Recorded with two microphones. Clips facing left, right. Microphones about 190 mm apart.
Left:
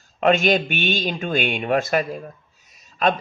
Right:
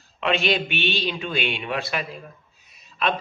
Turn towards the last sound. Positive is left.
turn(degrees=40)  # may be behind; listen again after turning